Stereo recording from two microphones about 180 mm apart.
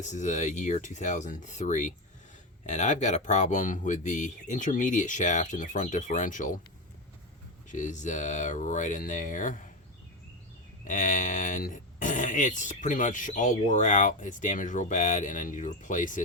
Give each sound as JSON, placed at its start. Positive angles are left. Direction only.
{"t": 0.0, "sound": "speech", "side_deg": 45}
{"t": 7.7, "sound": "speech", "side_deg": 40}
{"t": 10.8, "sound": "speech", "side_deg": 45}